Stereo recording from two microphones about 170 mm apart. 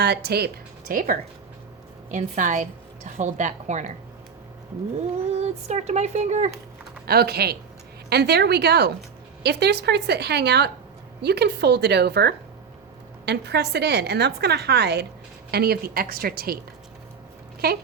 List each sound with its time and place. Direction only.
0.0 s a woman's voice: 75° right (ahead or behind); by 3.9 s 45° right (ahead or behind)
5.3 s speech: 40° right (ahead or behind)
7.1 s a woman's voice: 65° right (ahead or behind)
15.5 s a woman's voice: 65° right (ahead or behind)
17.6 s a woman's voice: 65° right (ahead or behind)